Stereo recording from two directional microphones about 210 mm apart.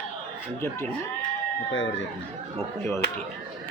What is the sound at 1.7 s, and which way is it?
Speech, 65° left (ahead or behind).